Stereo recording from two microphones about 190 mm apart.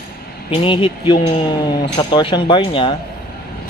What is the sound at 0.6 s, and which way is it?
Speech, 30° left (ahead or behind).